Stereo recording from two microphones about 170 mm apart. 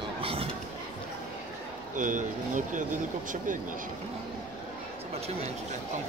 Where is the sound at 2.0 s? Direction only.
50° right (ahead or behind).